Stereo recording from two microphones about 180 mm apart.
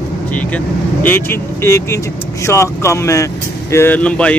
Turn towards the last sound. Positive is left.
turn(degrees=5)  # may be behind; listen again after turning